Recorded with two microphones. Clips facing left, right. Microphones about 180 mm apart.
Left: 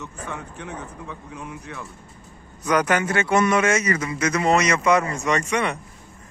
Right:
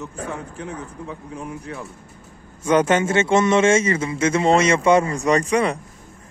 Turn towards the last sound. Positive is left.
turn(degrees=-35)  # may be behind; listen again after turning